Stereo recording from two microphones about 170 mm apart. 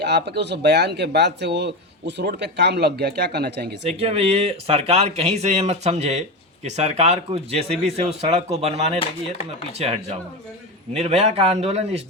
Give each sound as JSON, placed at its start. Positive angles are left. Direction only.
{"t": 0.0, "sound": "speech", "side_deg": -85}
{"t": 3.8, "sound": "speech", "side_deg": -35}
{"t": 9.0, "sound": "speech", "side_deg": 35}
{"t": 9.7, "sound": "speech", "side_deg": -40}